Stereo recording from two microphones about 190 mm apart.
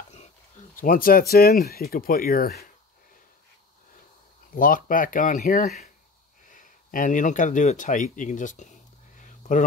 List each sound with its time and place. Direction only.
0.7 s speech: 50° left (ahead or behind)
4.6 s speech: 45° left (ahead or behind)
9.1 s a sound: 40° left (ahead or behind)